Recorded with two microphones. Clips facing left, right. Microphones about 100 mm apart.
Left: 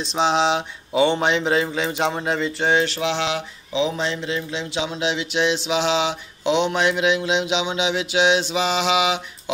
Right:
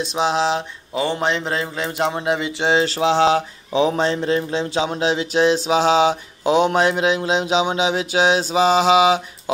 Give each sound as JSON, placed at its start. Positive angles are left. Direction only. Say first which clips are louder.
{"t": 0.1, "sound": "a man's voice", "louder": "left 1 dB", "side_deg": -5}
{"t": 2.6, "sound": "mantra", "louder": "right 3 dB", "side_deg": -30}